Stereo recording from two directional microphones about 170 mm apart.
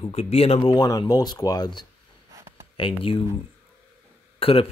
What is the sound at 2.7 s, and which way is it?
Speech, 30° left (ahead or behind).